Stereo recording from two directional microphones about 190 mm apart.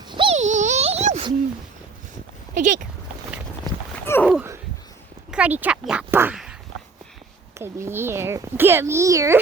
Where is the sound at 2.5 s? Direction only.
45° right (ahead or behind).